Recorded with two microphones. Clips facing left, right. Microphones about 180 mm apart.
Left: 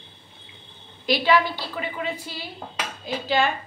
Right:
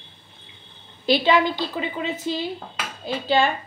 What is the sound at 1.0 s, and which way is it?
A woman's voice, 25° right (ahead or behind).